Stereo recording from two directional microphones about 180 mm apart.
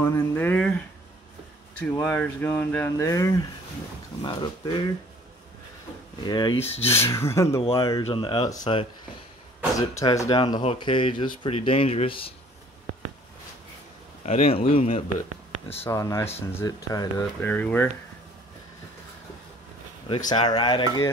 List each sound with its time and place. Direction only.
0.0 s speech: 10° left (ahead or behind)
1.8 s speech: 5° left (ahead or behind); by 4.8 s 25° left (ahead or behind)
6.2 s speech: 25° left (ahead or behind)
6.6 s speech: 35° left (ahead or behind)
6.9 s speech: 15° left (ahead or behind)
7.8 s speech: 25° left (ahead or behind)
14.2 s speech: 35° left (ahead or behind)
15.7 s speech: 15° left (ahead or behind)
17.2 s speech: 10° left (ahead or behind)
20.2 s speech: 25° left (ahead or behind)